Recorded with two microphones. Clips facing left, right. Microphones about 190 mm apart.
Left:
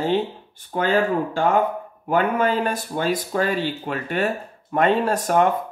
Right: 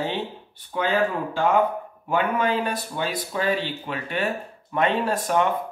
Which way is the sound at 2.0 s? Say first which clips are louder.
Left 3 dB; 45° left (ahead or behind).